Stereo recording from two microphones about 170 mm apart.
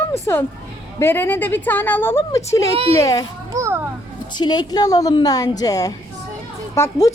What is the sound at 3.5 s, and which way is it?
Children playing, 15° right (ahead or behind).